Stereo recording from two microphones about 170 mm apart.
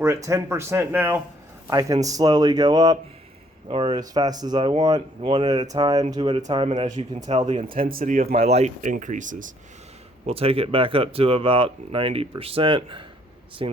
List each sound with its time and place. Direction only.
0.0 s speech: 15° right (ahead or behind); by 7.7 s 35° right (ahead or behind)
7.7 s speech: 55° right (ahead or behind)
8.3 s speech: 40° right (ahead or behind)
10.2 s speech: 35° right (ahead or behind)